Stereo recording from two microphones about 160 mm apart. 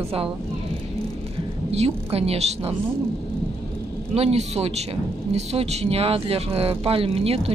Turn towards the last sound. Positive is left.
turn(degrees=-35)  # may be behind; listen again after turning